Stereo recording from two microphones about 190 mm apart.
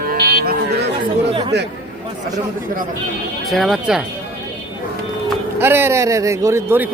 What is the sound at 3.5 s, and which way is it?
Speech, centre (ahead or behind).